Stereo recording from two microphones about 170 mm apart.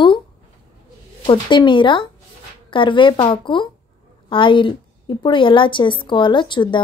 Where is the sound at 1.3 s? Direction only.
30° left (ahead or behind).